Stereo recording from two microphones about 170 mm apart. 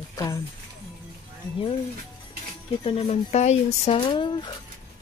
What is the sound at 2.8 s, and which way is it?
Speech, 35° left (ahead or behind).